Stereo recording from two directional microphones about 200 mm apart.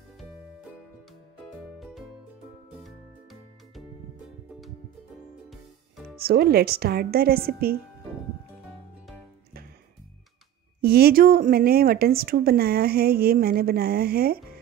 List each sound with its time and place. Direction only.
1.6 s music: centre (ahead or behind)
5.5 s music: centre (ahead or behind)
6.1 s a woman's voice: 50° right (ahead or behind)
10.8 s a woman's voice: 50° right (ahead or behind)